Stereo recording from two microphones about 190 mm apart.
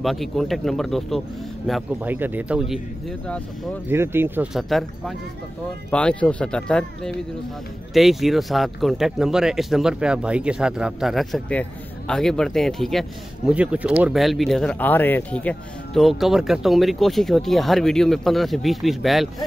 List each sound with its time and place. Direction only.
0.0 s speech: centre (ahead or behind)
3.9 s speech: 10° right (ahead or behind)